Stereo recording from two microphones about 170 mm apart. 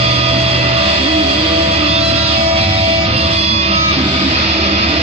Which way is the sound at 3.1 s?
35° right (ahead or behind).